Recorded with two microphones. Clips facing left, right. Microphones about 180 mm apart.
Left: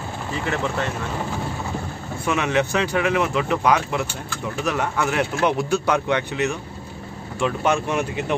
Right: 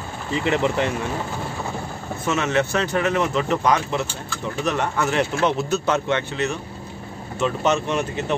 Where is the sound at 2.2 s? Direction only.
15° left (ahead or behind).